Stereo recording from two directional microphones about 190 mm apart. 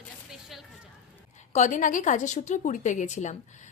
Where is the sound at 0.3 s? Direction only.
Centre (ahead or behind).